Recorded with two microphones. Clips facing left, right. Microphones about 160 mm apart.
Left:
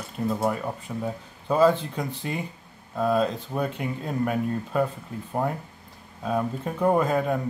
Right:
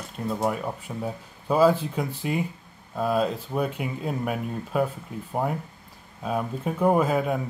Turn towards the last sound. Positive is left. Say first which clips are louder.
# even
turn(degrees=-5)  # may be behind; listen again after turning